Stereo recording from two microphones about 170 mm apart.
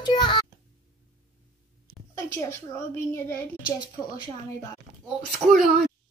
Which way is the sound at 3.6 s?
25° left (ahead or behind).